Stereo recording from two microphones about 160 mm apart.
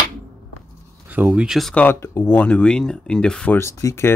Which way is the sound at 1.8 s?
15° left (ahead or behind).